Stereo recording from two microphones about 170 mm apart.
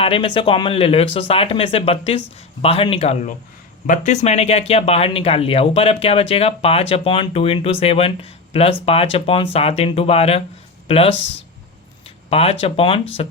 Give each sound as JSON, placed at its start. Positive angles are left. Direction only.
{"t": 0.0, "sound": "speech", "side_deg": 30}
{"t": 3.8, "sound": "speech", "side_deg": 50}